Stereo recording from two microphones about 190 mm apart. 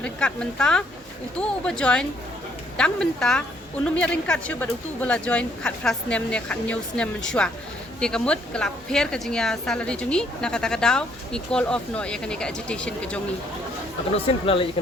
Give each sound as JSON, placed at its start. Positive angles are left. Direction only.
{"t": 0.0, "sound": "a woman's voice", "side_deg": 5}
{"t": 14.1, "sound": "speech", "side_deg": 30}